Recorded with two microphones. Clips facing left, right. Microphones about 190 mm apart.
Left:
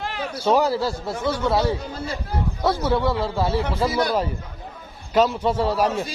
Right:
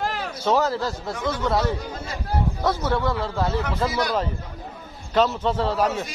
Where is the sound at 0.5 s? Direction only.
10° left (ahead or behind).